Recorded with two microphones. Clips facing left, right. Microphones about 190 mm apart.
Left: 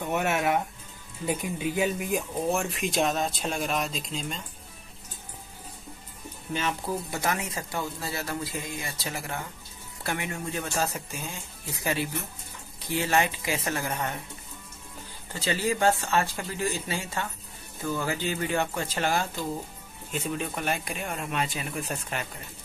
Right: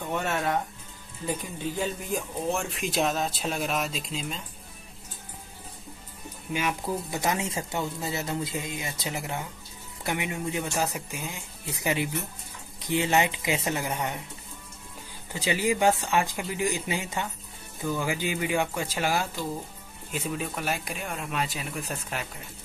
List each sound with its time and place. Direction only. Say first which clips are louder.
0.1 s speech: left 2 dB; 10° left (ahead or behind)
6.5 s speech: right 1 dB; 15° right (ahead or behind)
15.3 s speech: right 1 dB; 15° right (ahead or behind)